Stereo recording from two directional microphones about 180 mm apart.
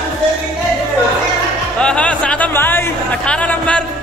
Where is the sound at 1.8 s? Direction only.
5° left (ahead or behind).